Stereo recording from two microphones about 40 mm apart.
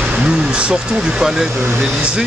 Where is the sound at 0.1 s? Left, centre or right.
Right.